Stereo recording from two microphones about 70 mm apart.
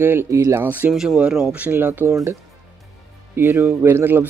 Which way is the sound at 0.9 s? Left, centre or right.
Centre.